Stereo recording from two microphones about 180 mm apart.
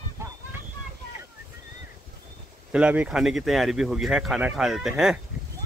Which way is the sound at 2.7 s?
5° right (ahead or behind).